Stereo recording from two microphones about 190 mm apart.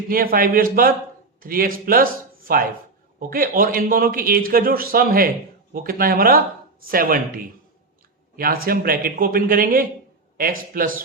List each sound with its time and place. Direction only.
0.1 s a man's voice: 50° right (ahead or behind)
8.6 s a man's voice: 50° right (ahead or behind)